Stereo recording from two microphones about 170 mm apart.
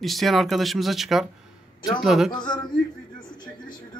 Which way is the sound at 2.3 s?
25° left (ahead or behind).